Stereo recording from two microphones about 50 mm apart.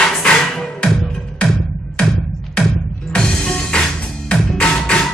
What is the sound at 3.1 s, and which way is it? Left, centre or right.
Music, centre.